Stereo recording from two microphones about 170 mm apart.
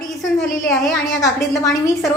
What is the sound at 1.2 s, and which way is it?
Speech, 20° left (ahead or behind).